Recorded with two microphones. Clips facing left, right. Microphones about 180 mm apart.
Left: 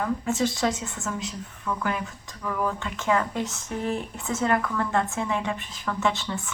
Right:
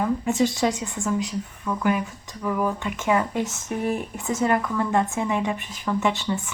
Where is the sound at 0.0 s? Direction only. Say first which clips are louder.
Right 3 dB; 15° right (ahead or behind).